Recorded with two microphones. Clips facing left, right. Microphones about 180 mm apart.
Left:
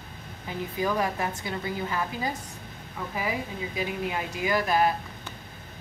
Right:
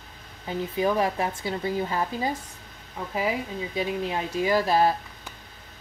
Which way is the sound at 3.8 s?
30° right (ahead or behind).